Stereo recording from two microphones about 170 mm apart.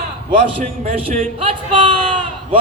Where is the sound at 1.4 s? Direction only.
30° right (ahead or behind).